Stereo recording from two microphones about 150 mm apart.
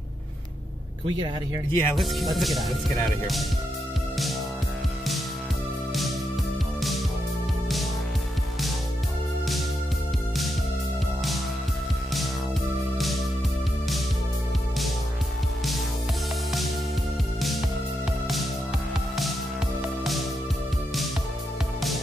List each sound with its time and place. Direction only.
1.0 s speech: 35° right (ahead or behind)
1.7 s speech: 15° left (ahead or behind)
2.0 s speech: centre (ahead or behind)
17.4 s music: centre (ahead or behind)